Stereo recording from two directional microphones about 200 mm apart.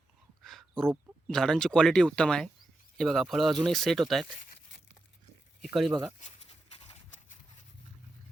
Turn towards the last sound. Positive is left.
turn(degrees=35)  # may be behind; listen again after turning